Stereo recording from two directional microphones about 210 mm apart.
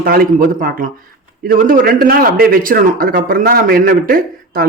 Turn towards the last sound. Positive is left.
turn(degrees=-45)  # may be behind; listen again after turning